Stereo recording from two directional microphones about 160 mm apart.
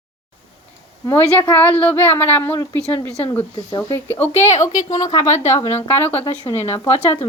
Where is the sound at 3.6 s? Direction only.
25° left (ahead or behind).